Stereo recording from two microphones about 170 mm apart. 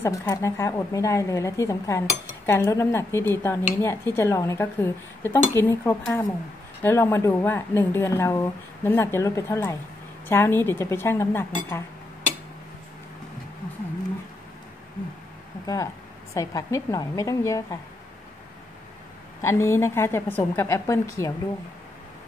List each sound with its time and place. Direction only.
0.0 s a woman's voice: 15° left (ahead or behind)
15.6 s a woman's voice: 20° left (ahead or behind)
19.4 s a woman's voice: 15° left (ahead or behind)